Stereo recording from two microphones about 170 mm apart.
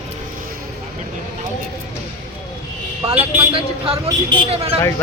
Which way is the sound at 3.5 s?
30° right (ahead or behind).